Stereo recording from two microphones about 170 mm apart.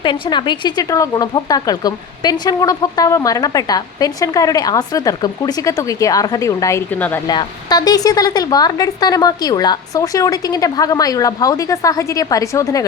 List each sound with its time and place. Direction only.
0.0 s speech: 25° left (ahead or behind); by 7.2 s 10° left (ahead or behind)
7.3 s speech: 25° left (ahead or behind)